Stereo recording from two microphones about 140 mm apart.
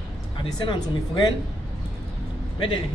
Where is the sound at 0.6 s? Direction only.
30° left (ahead or behind).